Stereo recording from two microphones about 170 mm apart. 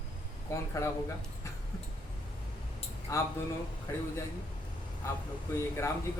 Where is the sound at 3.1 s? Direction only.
15° left (ahead or behind).